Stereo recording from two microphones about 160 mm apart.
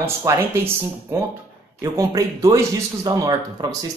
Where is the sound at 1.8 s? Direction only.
20° right (ahead or behind).